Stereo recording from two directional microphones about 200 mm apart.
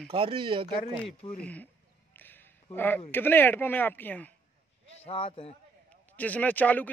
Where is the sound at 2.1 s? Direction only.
10° left (ahead or behind).